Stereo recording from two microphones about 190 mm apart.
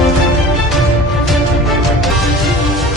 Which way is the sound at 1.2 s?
Centre (ahead or behind).